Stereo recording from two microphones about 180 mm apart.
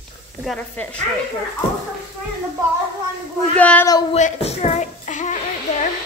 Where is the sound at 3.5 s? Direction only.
10° left (ahead or behind).